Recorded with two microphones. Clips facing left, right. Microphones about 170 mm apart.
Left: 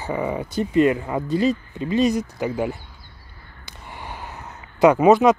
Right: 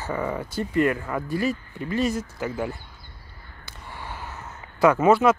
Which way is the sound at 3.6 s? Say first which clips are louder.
Left 2 dB; 15° left (ahead or behind).